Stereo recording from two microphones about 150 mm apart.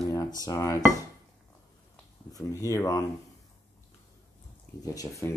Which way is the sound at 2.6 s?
20° left (ahead or behind).